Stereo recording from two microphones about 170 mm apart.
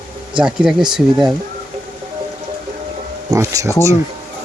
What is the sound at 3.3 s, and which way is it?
Speech, 20° right (ahead or behind).